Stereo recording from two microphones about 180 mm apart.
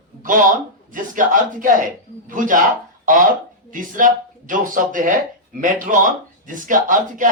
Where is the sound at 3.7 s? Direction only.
45° right (ahead or behind).